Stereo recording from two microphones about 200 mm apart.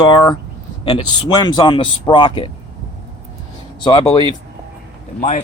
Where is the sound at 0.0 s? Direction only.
20° left (ahead or behind).